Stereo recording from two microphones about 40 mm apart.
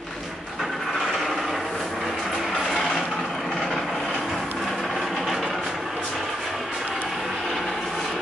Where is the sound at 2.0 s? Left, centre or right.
Centre.